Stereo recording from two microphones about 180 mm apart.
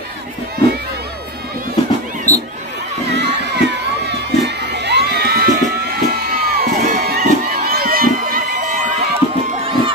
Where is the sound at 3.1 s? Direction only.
70° right (ahead or behind); by 8.9 s 40° right (ahead or behind).